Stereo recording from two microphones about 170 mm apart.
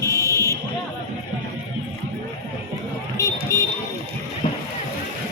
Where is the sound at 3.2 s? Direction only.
20° left (ahead or behind).